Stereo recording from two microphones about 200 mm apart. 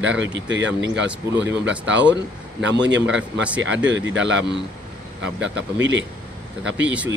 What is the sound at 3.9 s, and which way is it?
Speech, 65° right (ahead or behind).